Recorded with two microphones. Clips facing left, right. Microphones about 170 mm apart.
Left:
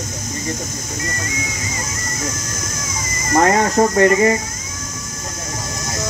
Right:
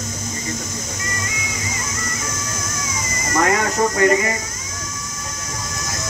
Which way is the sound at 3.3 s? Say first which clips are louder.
Left 5 dB; 35° left (ahead or behind).